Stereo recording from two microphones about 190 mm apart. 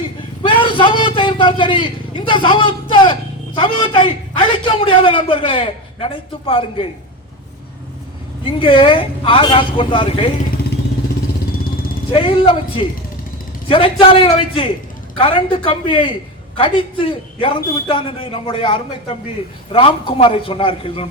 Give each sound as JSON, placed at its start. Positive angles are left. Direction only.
{"t": 0.4, "sound": "vehicle", "side_deg": 25}
{"t": 2.9, "sound": "a man's voice", "side_deg": 25}
{"t": 8.5, "sound": "a man's voice", "side_deg": 25}
{"t": 12.1, "sound": "a man's voice", "side_deg": 25}